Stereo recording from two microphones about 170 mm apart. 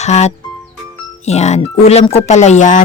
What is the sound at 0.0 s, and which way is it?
Speech, 40° left (ahead or behind).